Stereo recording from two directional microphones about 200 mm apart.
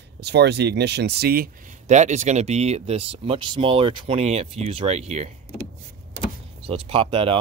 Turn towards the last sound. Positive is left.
turn(degrees=-25)  # may be behind; listen again after turning